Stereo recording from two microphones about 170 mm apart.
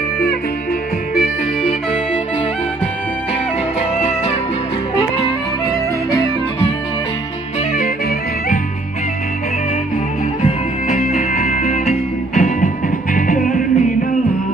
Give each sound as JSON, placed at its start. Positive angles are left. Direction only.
{"t": 10.4, "sound": "music", "side_deg": 40}